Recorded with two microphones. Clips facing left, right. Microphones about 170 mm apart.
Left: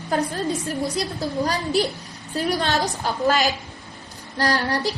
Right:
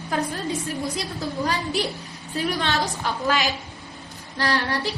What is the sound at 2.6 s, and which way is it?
A woman's voice, 40° left (ahead or behind).